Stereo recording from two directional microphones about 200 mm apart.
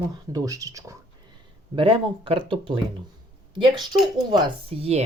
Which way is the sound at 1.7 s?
25° right (ahead or behind).